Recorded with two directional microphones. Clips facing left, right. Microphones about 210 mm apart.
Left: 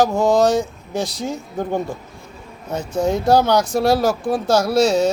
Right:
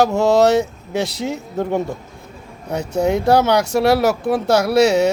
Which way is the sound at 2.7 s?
65° right (ahead or behind).